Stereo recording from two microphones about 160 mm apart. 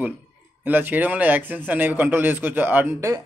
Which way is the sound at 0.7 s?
10° right (ahead or behind).